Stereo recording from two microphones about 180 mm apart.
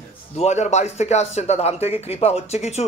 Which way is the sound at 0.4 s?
40° left (ahead or behind).